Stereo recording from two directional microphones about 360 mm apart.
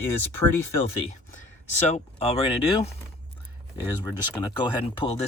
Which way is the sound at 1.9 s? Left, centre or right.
Centre.